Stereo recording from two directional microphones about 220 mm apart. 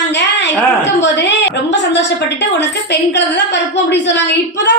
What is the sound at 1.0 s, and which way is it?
A woman's voice, 55° left (ahead or behind).